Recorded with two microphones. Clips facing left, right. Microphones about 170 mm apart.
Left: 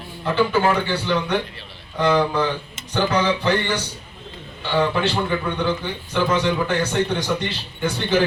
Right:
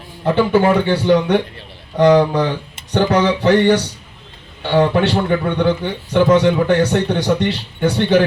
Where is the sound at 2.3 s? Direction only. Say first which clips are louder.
Right 4 dB; 55° right (ahead or behind).